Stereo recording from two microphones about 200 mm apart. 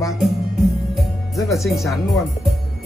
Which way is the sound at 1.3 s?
Centre (ahead or behind).